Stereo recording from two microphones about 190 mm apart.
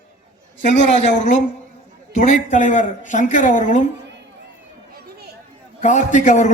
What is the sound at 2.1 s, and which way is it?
A man's voice, 40° left (ahead or behind).